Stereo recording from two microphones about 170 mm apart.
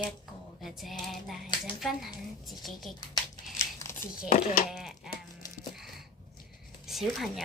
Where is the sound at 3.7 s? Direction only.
15° left (ahead or behind).